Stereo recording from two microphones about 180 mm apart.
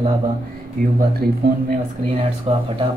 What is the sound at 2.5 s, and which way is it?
Speech, 30° right (ahead or behind).